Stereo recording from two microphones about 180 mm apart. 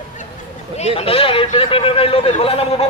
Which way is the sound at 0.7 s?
35° left (ahead or behind).